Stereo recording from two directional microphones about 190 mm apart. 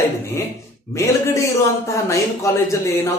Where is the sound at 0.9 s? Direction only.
15° left (ahead or behind).